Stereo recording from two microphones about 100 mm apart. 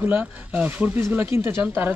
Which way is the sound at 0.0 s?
15° right (ahead or behind).